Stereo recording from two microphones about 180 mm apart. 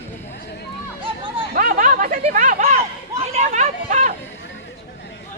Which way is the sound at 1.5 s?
50° right (ahead or behind).